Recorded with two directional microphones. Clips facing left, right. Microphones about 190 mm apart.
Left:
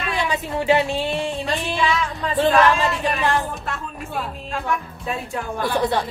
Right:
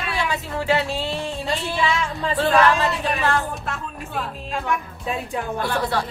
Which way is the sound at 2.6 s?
15° left (ahead or behind).